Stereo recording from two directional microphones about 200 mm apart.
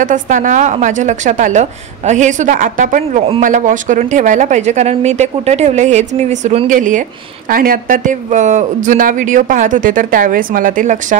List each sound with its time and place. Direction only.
0.0 s speech: 40° right (ahead or behind)